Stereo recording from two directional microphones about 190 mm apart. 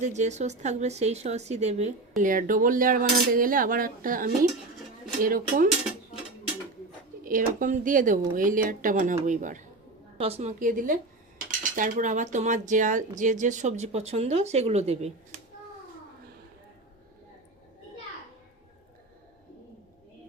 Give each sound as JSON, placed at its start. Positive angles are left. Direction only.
{"t": 0.0, "sound": "speech", "side_deg": -40}
{"t": 7.3, "sound": "speech", "side_deg": -45}